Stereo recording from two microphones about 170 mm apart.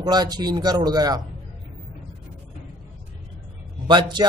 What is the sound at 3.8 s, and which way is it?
Speech, 25° right (ahead or behind).